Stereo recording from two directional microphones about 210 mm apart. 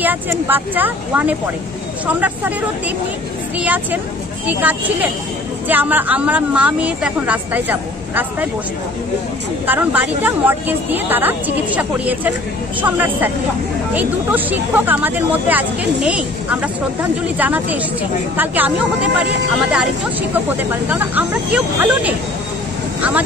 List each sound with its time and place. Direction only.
0.0 s speech: 10° right (ahead or behind)
3.5 s speech: 10° right (ahead or behind)
9.7 s speech: 10° right (ahead or behind)
20.9 s speech: 10° right (ahead or behind)